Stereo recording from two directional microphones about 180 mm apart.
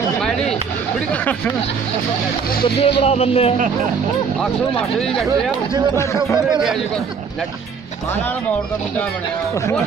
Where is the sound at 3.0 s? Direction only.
35° left (ahead or behind).